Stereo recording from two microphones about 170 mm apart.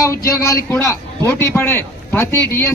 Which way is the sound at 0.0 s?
15° left (ahead or behind).